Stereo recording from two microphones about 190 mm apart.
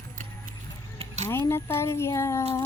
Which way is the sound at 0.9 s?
35° right (ahead or behind).